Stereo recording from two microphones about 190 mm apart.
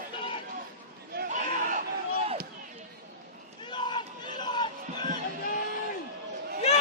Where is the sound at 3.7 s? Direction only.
25° left (ahead or behind).